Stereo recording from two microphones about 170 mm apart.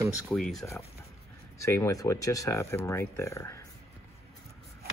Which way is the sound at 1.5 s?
15° left (ahead or behind).